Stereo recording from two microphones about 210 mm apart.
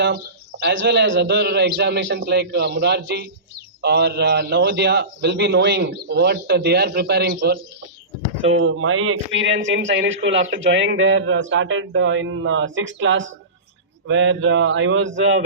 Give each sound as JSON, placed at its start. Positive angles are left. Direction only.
{"t": 0.6, "sound": "a man's voice", "side_deg": -60}
{"t": 8.4, "sound": "speech", "side_deg": -70}